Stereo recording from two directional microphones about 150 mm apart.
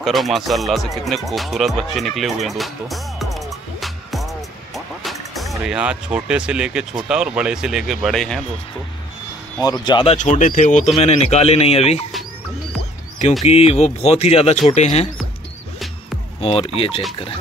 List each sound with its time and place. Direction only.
0.0 s speech: centre (ahead or behind)
2.4 s music: centre (ahead or behind)
7.1 s speech: 5° right (ahead or behind)
9.6 s speech: 30° left (ahead or behind)
10.1 s speech: 55° left (ahead or behind)
13.5 s speech: 40° left (ahead or behind)
16.3 s speech: 40° left (ahead or behind)